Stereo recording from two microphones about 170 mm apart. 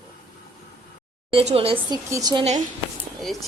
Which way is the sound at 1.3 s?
35° right (ahead or behind).